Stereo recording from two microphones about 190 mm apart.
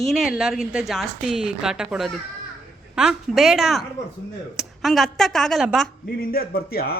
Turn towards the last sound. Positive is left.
turn(degrees=55)  # may be behind; listen again after turning